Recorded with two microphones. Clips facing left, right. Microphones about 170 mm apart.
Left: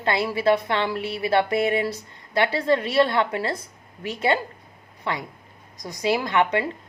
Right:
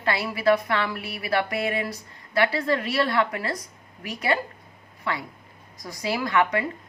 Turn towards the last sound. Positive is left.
turn(degrees=25)  # may be behind; listen again after turning